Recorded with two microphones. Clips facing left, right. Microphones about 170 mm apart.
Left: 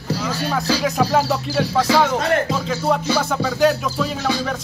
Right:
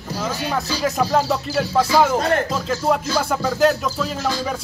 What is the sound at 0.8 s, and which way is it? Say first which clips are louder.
Music: right 2 dB; 5° left (ahead or behind).